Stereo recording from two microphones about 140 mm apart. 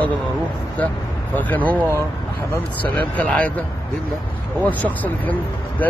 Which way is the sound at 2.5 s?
10° left (ahead or behind).